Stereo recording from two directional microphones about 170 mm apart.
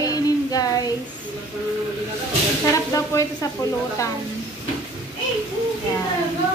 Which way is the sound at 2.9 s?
20° left (ahead or behind).